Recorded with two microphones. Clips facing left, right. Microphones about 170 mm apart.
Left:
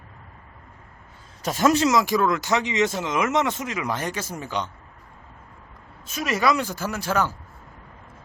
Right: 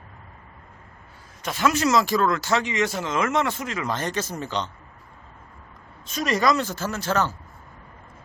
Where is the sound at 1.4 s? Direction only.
40° left (ahead or behind).